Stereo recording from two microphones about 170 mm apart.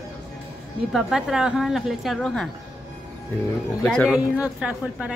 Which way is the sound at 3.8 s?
5° left (ahead or behind).